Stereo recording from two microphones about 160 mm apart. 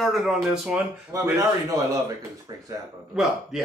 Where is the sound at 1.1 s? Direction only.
20° right (ahead or behind).